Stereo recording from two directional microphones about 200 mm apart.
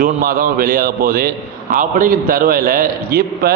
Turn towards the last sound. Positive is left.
turn(degrees=-50)  # may be behind; listen again after turning